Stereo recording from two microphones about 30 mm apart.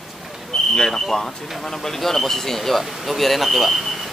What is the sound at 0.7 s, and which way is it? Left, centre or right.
Speech, centre.